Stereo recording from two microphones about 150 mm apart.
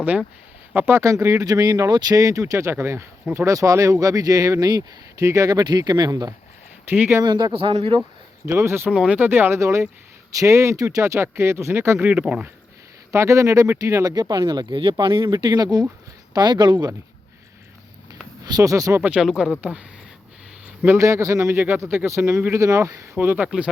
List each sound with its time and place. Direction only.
0.0 s speech: 10° right (ahead or behind); by 6.3 s 25° right (ahead or behind)
6.8 s speech: 15° right (ahead or behind)
7.2 s speech: 30° right (ahead or behind)
8.4 s speech: 15° right (ahead or behind)
13.1 s speech: 20° right (ahead or behind)
18.4 s speech: 25° right (ahead or behind)
19.0 s speech: 5° right (ahead or behind)
20.8 s speech: 15° right (ahead or behind)